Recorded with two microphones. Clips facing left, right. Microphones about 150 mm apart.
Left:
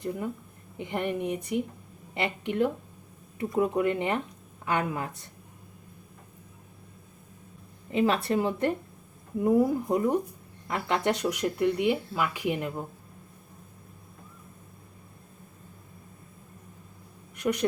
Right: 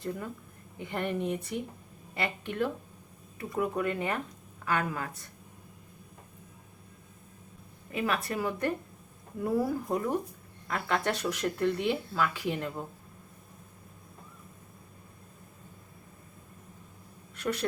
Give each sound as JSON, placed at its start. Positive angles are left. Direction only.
{"t": 0.8, "sound": "speech", "side_deg": 20}
{"t": 7.9, "sound": "speech", "side_deg": 25}
{"t": 17.3, "sound": "speech", "side_deg": 15}